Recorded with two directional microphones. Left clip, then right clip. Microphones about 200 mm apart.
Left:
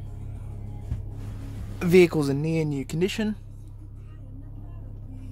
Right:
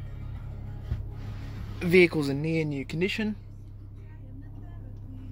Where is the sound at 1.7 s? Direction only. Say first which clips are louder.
Left 2 dB; 15° left (ahead or behind).